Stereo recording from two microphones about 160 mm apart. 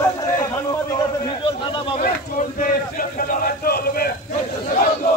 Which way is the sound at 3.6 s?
70° left (ahead or behind).